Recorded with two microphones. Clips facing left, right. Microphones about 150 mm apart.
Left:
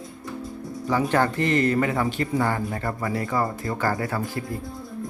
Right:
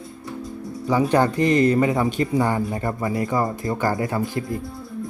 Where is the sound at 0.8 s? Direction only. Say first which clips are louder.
Right 3 dB; 15° right (ahead or behind).